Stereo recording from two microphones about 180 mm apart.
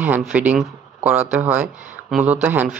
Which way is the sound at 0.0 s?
10° right (ahead or behind).